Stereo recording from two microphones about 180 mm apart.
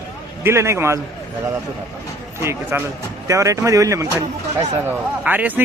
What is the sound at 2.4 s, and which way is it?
A man's voice, 15° right (ahead or behind).